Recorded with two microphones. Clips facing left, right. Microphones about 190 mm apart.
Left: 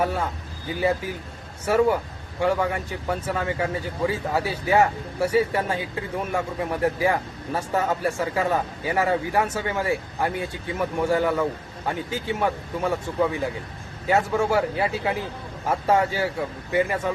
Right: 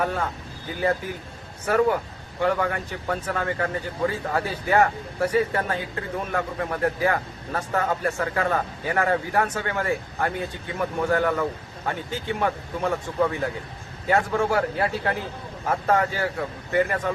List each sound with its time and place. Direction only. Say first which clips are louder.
0.0 s a man's voice: left 1 dB; 10° left (ahead or behind)
1.6 s a man's voice: left 1 dB; 10° left (ahead or behind)